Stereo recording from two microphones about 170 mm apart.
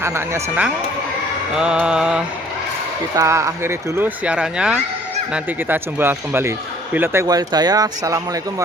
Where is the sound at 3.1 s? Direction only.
20° right (ahead or behind).